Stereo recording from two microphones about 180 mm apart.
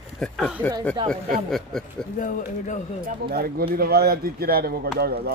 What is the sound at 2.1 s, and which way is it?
Speech, 45° left (ahead or behind).